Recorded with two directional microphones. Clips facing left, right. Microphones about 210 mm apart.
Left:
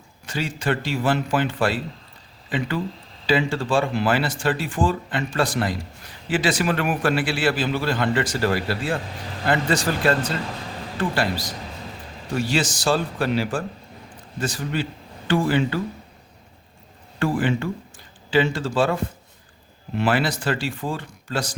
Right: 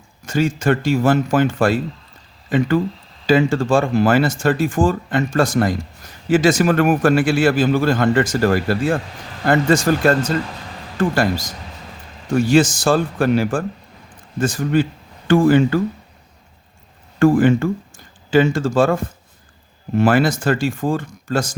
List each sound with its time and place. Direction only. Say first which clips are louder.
0.3 s speech: right 8 dB; 45° right (ahead or behind)
17.2 s speech: right 9 dB; 45° right (ahead or behind)
20.0 s speech: right 7 dB; 45° right (ahead or behind)